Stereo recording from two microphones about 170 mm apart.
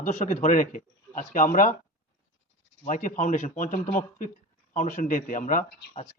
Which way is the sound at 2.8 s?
50° left (ahead or behind).